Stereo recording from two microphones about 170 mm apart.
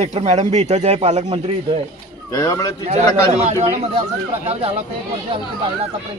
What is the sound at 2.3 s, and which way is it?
Speech, 20° left (ahead or behind).